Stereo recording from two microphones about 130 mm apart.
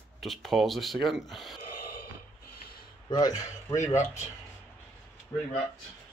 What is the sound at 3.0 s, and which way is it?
A man's voice, 30° left (ahead or behind).